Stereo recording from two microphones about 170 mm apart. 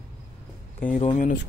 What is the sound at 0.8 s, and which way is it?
Speech, 50° left (ahead or behind).